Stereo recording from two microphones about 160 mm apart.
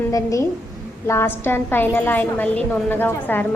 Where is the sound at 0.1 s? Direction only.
20° left (ahead or behind).